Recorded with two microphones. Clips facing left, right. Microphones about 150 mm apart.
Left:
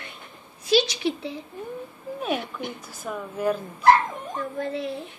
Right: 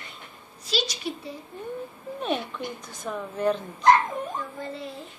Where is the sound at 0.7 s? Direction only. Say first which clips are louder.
Left 8 dB; 80° left.